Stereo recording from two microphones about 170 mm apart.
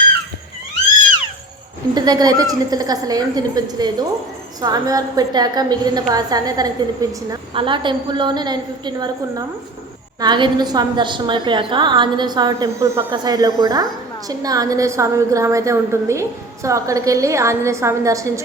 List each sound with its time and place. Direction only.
2.0 s a woman's voice: 25° right (ahead or behind)